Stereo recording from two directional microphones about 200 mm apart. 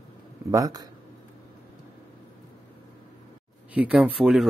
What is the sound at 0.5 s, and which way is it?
Speech, 15° right (ahead or behind).